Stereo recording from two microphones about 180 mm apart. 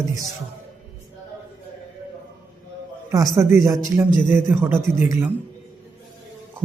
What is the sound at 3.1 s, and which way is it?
A man's voice, 20° right (ahead or behind).